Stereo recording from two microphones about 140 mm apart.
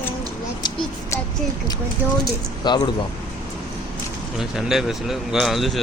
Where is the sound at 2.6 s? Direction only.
30° left (ahead or behind).